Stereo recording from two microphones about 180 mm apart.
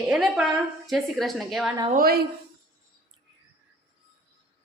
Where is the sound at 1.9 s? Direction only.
55° right (ahead or behind).